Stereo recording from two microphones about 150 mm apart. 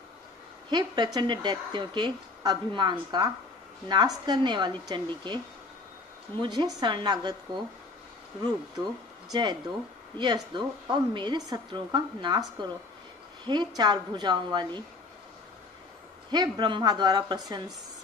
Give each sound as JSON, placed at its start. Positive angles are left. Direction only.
{"t": 0.7, "sound": "a woman's voice", "side_deg": -30}
{"t": 9.3, "sound": "speech", "side_deg": -30}
{"t": 16.3, "sound": "speech", "side_deg": -30}